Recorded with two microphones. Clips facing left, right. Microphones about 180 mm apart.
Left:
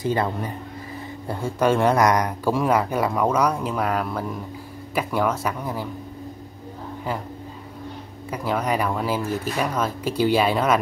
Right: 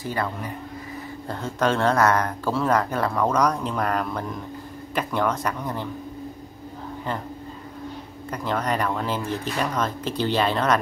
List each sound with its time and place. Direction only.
0.0 s speech: 25° left (ahead or behind)
1.3 s speech: 10° left (ahead or behind)
8.3 s speech: 10° left (ahead or behind)